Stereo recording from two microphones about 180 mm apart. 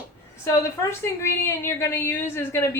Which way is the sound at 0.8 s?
15° left (ahead or behind).